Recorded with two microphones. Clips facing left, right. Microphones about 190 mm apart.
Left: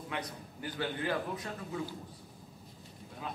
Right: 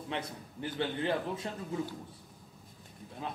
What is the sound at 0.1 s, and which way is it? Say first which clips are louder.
Speech: right 2 dB; 25° right (ahead or behind).